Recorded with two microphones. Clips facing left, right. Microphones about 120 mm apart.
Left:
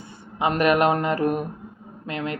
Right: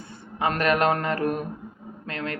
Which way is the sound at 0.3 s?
15° left (ahead or behind).